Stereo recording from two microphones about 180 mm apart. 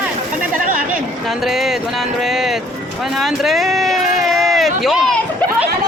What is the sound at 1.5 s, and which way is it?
Music, centre (ahead or behind).